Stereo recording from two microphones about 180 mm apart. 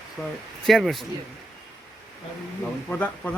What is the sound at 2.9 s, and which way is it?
Speech, 10° left (ahead or behind).